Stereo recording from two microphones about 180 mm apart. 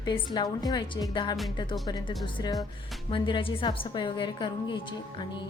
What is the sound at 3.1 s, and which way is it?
A woman's voice, 30° left (ahead or behind).